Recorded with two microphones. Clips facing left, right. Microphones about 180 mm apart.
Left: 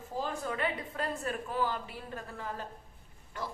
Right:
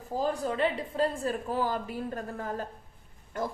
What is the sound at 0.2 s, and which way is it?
A woman's voice, 35° right (ahead or behind).